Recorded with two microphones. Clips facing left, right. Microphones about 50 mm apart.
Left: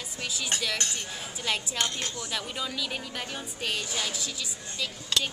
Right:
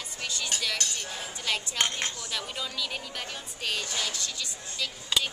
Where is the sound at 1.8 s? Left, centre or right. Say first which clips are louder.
Right 1 dB; right.